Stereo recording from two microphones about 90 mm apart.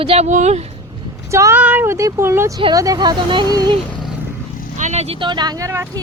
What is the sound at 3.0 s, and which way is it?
Speech, 55° right (ahead or behind).